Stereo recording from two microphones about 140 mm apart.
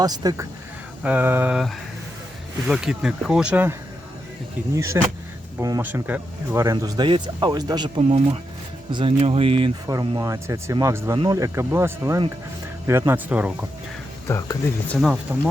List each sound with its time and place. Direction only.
0.0 s speech: 30° right (ahead or behind)
1.0 s speech: 15° right (ahead or behind)
2.6 s speech: 5° right (ahead or behind)
4.7 s speech: 25° right (ahead or behind)
5.8 s speech: 10° right (ahead or behind)
6.7 s speech: 30° right (ahead or behind)
8.0 s speech: 45° right (ahead or behind)
9.8 s speech: 25° right (ahead or behind); by 13.7 s 10° right (ahead or behind)
14.3 s speech: 20° left (ahead or behind)
15.3 s speech: 15° right (ahead or behind)